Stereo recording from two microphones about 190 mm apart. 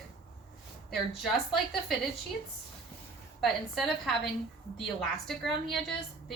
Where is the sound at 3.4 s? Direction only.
Centre (ahead or behind).